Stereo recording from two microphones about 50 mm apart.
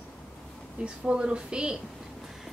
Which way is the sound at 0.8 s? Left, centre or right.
Centre.